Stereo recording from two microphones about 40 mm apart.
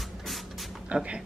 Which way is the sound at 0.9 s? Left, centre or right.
Right.